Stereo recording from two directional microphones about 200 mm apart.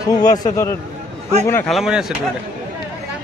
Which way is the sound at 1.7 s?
Centre (ahead or behind).